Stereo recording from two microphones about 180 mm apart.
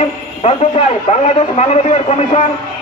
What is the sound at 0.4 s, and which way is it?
A man's voice, 35° left (ahead or behind).